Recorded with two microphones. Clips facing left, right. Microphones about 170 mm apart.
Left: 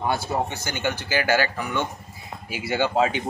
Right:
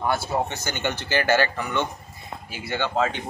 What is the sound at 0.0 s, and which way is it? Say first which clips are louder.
Speech: even; 15° left (ahead or behind).